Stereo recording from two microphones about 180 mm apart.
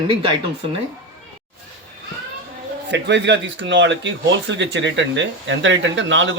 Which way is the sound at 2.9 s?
75° right (ahead or behind).